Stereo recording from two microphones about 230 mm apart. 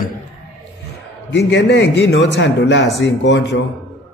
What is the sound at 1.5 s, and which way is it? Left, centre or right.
A man's voice, left.